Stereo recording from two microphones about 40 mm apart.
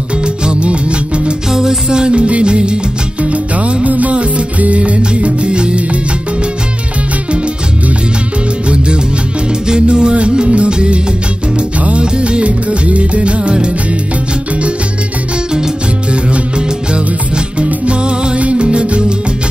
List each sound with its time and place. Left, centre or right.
0.5 s music: right
1.5 s music: centre
3.3 s music: right
9.7 s music: right
16.1 s music: right